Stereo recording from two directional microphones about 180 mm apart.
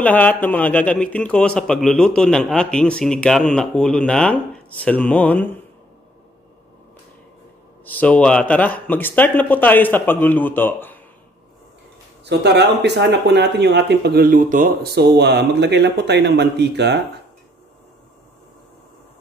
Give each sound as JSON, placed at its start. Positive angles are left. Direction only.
{"t": 0.0, "sound": "a man's voice", "side_deg": 10}
{"t": 7.8, "sound": "a man's voice", "side_deg": 10}
{"t": 12.3, "sound": "speech", "side_deg": -70}